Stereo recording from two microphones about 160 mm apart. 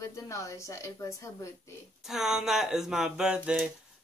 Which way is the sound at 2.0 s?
5° right (ahead or behind).